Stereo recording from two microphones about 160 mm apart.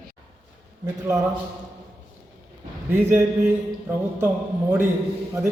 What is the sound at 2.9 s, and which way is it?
Speech, 15° right (ahead or behind).